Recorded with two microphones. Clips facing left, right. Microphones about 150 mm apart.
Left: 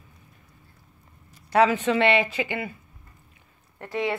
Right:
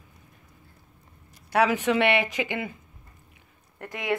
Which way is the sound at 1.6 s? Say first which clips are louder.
Left 2 dB; 15° right (ahead or behind).